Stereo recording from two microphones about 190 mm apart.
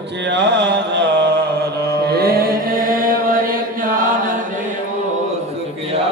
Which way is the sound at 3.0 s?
50° right (ahead or behind).